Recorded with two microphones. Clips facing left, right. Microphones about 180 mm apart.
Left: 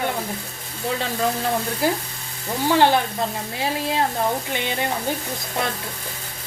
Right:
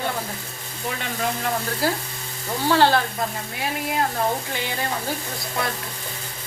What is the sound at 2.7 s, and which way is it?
Stir, 15° left (ahead or behind).